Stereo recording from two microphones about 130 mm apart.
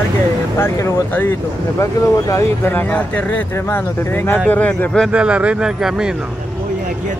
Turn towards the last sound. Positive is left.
turn(degrees=-5)  # may be behind; listen again after turning